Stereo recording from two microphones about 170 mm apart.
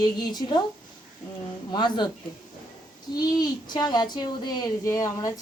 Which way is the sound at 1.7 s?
25° left (ahead or behind).